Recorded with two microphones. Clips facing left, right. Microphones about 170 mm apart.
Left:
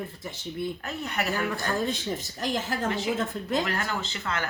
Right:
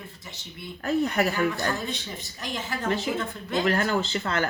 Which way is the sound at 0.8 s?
35° right (ahead or behind).